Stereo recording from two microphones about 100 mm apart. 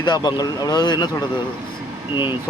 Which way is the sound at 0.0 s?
45° left (ahead or behind).